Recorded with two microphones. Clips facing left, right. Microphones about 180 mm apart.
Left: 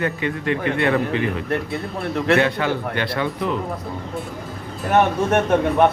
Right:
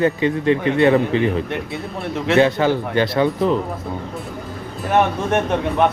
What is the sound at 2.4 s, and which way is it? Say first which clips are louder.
A man's voice: right 4 dB; 35° right (ahead or behind).